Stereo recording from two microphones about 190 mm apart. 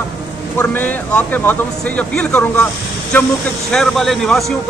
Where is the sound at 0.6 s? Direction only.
10° left (ahead or behind).